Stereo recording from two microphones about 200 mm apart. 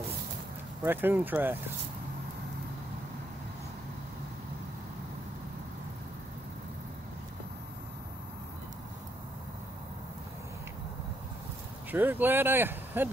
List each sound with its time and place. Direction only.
0.8 s speech: 10° right (ahead or behind)
11.9 s speech: 10° right (ahead or behind)